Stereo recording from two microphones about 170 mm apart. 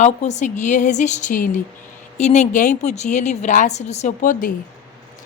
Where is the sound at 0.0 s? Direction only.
45° left (ahead or behind).